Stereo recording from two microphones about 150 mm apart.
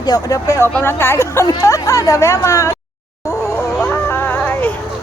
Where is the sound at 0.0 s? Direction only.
25° left (ahead or behind).